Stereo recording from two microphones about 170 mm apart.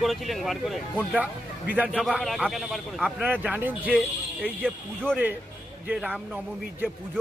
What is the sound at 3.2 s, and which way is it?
Speech, 10° right (ahead or behind).